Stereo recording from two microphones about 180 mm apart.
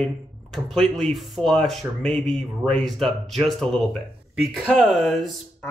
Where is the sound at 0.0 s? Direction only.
Centre (ahead or behind).